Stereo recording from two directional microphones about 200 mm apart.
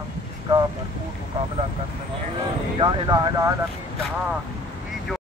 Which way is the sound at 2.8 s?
25° right (ahead or behind).